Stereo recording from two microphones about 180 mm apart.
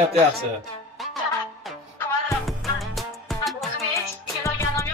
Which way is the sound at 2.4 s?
Centre (ahead or behind).